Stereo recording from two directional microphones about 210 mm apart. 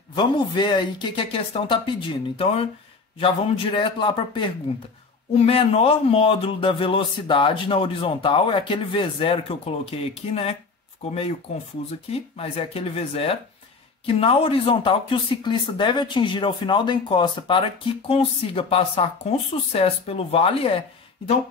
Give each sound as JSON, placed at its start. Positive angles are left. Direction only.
{"t": 0.1, "sound": "speech", "side_deg": 20}
{"t": 12.1, "sound": "speech", "side_deg": 25}